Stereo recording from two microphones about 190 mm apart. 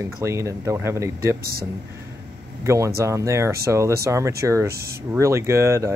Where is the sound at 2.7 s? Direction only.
15° right (ahead or behind).